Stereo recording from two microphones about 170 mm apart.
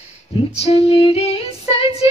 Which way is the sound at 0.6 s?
35° left (ahead or behind).